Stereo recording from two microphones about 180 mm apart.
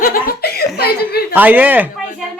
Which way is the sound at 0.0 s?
55° left (ahead or behind).